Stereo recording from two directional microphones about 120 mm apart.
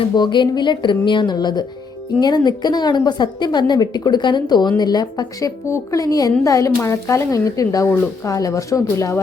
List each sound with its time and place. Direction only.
0.2 s a woman's voice: 40° left (ahead or behind)